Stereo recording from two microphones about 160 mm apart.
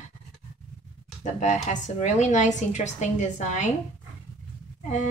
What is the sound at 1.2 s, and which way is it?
Speech, 45° left (ahead or behind).